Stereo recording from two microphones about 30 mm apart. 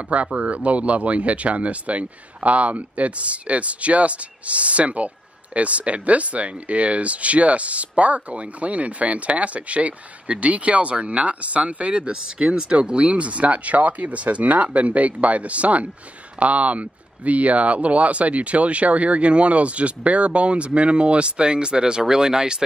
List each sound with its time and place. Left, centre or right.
0.1 s speech: right